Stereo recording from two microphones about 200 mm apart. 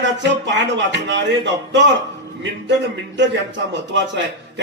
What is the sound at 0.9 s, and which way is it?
Speech, 60° right (ahead or behind).